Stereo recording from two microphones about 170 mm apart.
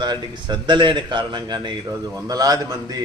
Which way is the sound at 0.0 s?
25° right (ahead or behind).